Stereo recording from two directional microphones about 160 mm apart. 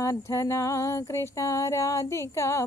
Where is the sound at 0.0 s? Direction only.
20° left (ahead or behind).